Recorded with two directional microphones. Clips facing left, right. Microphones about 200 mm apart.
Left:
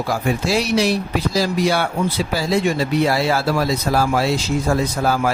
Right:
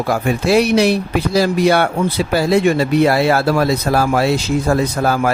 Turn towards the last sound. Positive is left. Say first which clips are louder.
# right 3 dB
turn(degrees=-60)  # may be behind; listen again after turning